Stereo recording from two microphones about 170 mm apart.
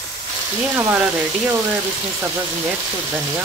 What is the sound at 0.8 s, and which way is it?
Speech, 10° right (ahead or behind).